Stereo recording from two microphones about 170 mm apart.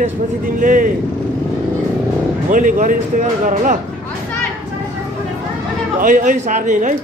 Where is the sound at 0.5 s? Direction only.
55° right (ahead or behind).